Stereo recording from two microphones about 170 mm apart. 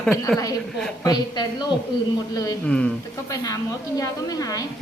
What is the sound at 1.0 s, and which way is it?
Speech, 25° left (ahead or behind).